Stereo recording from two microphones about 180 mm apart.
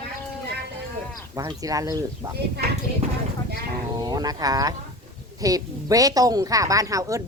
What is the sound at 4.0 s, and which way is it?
A woman's voice, 20° right (ahead or behind).